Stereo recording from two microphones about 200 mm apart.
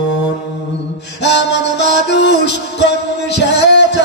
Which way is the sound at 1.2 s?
60° left (ahead or behind).